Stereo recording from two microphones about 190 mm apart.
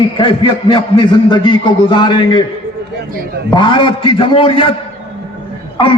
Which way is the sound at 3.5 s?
25° left (ahead or behind).